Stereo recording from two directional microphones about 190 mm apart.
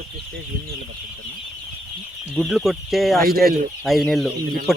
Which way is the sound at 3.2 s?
50° right (ahead or behind).